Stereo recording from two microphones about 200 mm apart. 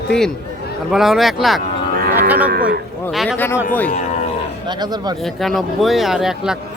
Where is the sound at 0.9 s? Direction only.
Centre (ahead or behind).